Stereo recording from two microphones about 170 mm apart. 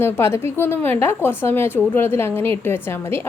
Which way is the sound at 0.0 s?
15° left (ahead or behind).